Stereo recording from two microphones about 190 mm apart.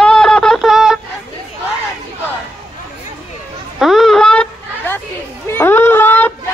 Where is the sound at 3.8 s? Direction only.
Centre (ahead or behind).